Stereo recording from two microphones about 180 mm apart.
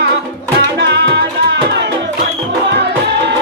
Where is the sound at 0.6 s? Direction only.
70° right (ahead or behind).